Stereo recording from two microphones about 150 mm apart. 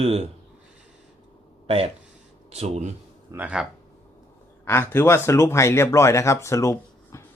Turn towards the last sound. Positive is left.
turn(degrees=20)  # may be behind; listen again after turning